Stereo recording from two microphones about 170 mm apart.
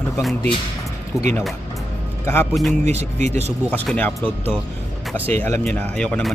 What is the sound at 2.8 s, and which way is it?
Speech, 40° right (ahead or behind).